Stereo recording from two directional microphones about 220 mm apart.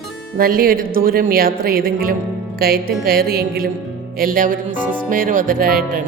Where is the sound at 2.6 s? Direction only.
45° right (ahead or behind).